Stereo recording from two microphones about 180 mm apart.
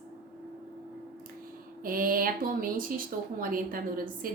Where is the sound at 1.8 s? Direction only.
50° right (ahead or behind).